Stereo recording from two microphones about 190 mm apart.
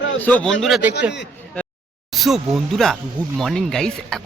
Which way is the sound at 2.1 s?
Centre (ahead or behind).